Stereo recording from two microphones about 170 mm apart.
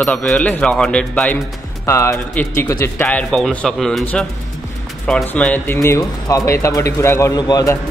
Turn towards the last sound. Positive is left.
turn(degrees=20)  # may be behind; listen again after turning